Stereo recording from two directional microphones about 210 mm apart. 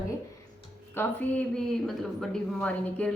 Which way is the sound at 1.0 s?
10° left (ahead or behind).